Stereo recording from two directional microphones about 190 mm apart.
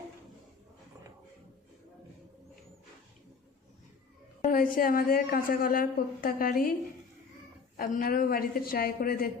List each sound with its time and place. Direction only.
4.4 s a woman's voice: 45° left (ahead or behind)
7.8 s a woman's voice: 50° left (ahead or behind)